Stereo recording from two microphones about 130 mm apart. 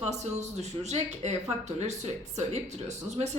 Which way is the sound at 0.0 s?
60° right (ahead or behind).